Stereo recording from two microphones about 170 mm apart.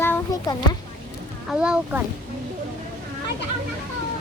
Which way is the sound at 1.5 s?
5° right (ahead or behind).